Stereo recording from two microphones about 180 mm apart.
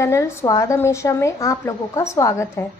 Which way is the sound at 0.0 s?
15° left (ahead or behind).